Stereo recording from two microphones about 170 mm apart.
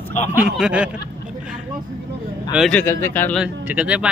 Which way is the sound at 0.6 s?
5° right (ahead or behind).